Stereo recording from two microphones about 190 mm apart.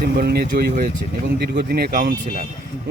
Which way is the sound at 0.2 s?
55° right (ahead or behind).